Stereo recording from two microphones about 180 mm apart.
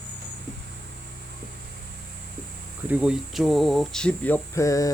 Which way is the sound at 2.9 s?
5° right (ahead or behind).